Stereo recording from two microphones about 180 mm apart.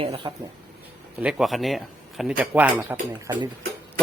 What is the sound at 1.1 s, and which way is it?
A man's voice, 5° right (ahead or behind).